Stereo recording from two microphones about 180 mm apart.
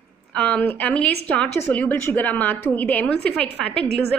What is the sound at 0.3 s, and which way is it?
A woman's voice, 5° left (ahead or behind).